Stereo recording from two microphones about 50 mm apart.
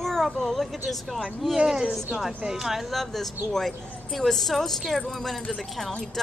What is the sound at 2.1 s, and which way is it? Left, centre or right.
A woman's voice, centre.